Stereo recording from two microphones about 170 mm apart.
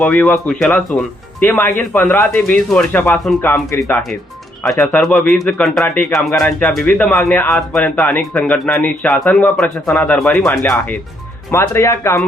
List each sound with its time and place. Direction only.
0.0 s speech: 10° left (ahead or behind)
4.6 s speech: centre (ahead or behind); by 12.2 s 15° left (ahead or behind)